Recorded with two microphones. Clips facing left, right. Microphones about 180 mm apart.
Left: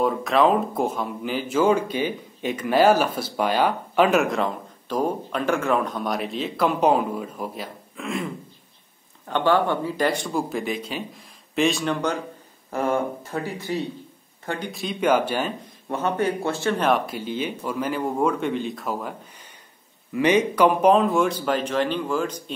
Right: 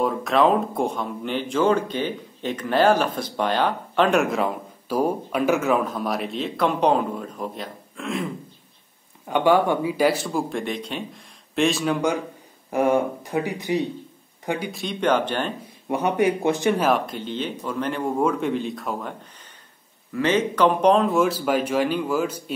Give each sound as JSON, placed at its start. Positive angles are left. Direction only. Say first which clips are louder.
{"t": 0.0, "sound": "speech", "louder": "even", "side_deg": 0}
{"t": 9.3, "sound": "a man's voice", "louder": "right 2 dB", "side_deg": -10}
{"t": 14.7, "sound": "speech", "louder": "left 2 dB", "side_deg": 0}
{"t": 15.6, "sound": "a man's voice", "louder": "right 2 dB", "side_deg": -15}
{"t": 16.8, "sound": "speech", "louder": "even", "side_deg": 0}
{"t": 20.1, "sound": "speech", "louder": "left 2 dB", "side_deg": 15}